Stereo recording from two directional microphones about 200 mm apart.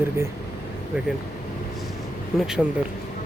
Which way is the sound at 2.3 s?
Centre (ahead or behind).